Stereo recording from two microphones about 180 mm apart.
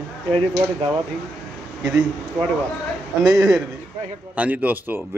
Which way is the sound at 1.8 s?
5° right (ahead or behind).